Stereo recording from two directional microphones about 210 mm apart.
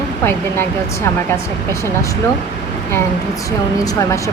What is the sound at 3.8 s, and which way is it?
Speech, 15° left (ahead or behind).